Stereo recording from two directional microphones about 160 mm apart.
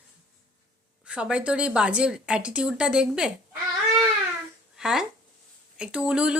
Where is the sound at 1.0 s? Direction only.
5° right (ahead or behind).